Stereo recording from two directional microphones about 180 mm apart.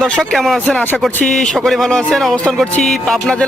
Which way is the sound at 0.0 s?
Centre (ahead or behind).